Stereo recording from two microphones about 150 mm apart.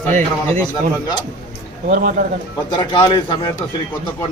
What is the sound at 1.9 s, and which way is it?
Speech, 65° right (ahead or behind).